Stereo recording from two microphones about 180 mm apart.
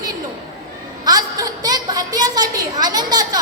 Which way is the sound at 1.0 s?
20° right (ahead or behind).